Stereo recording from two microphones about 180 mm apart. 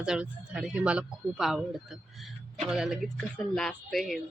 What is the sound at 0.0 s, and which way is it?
Speech, 5° right (ahead or behind).